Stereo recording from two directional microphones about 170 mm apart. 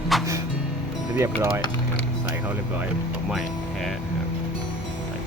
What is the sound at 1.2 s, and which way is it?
Speech, 15° right (ahead or behind).